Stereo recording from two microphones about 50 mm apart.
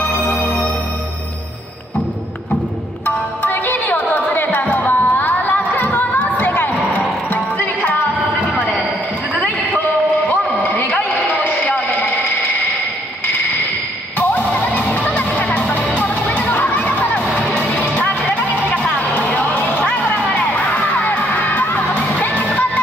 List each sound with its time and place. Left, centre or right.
0.1 s music: left
3.1 s music: left
10.6 s a sound: left
14.1 s music: left